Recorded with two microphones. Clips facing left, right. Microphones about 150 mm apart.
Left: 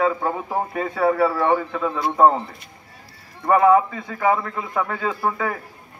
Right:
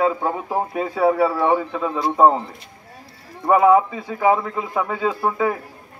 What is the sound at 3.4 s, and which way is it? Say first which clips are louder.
A man's voice: right 1 dB; 10° right (ahead or behind).